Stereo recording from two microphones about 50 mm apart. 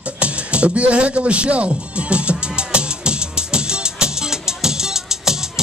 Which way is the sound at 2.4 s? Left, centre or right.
Right.